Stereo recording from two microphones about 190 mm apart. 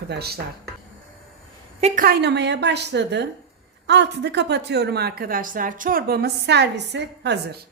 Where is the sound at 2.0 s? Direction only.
60° right (ahead or behind).